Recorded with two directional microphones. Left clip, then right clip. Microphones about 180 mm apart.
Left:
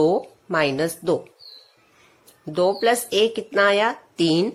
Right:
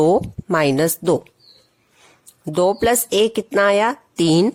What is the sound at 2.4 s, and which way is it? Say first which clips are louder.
Speech: right 3 dB; 45° right (ahead or behind).